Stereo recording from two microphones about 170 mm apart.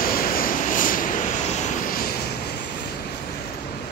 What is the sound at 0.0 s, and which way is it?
Vehicle, 60° left (ahead or behind).